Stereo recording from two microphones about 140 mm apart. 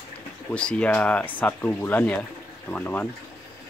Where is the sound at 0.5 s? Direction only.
10° left (ahead or behind).